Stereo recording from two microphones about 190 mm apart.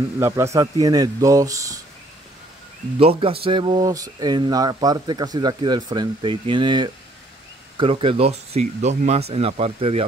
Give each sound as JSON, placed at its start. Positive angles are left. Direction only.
{"t": 0.2, "sound": "speech", "side_deg": -15}
{"t": 3.0, "sound": "speech", "side_deg": -30}